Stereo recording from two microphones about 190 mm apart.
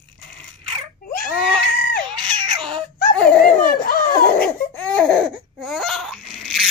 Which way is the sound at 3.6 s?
50° left (ahead or behind).